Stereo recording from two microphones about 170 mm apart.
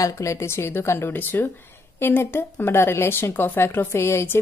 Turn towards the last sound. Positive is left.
turn(degrees=15)  # may be behind; listen again after turning